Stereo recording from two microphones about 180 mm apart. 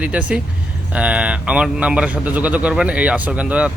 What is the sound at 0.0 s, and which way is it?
A man's voice, 5° right (ahead or behind).